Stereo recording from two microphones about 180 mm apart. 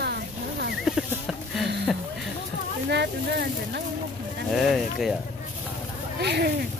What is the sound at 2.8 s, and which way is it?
Speech, 65° right (ahead or behind).